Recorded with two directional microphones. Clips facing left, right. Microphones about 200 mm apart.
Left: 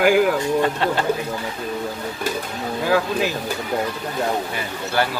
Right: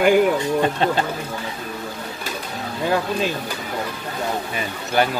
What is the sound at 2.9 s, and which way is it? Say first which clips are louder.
Speech: left 2 dB; 5° left (ahead or behind).